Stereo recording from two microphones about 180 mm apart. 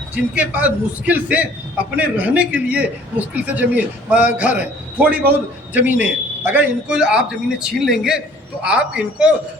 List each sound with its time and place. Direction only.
0.1 s a man's voice: 10° right (ahead or behind)